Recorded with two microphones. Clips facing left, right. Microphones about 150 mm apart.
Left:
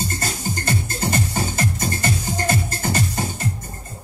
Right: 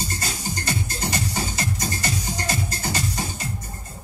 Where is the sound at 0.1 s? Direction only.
50° left (ahead or behind).